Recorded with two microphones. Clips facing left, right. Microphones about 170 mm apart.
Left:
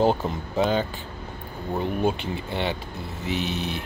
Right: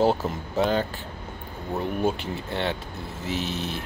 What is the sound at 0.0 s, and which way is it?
Speech, centre (ahead or behind).